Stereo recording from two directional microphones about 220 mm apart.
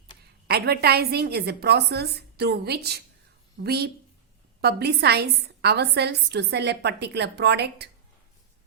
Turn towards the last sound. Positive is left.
turn(degrees=-50)  # may be behind; listen again after turning